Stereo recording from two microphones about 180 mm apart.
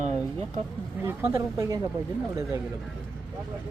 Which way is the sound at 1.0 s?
10° right (ahead or behind).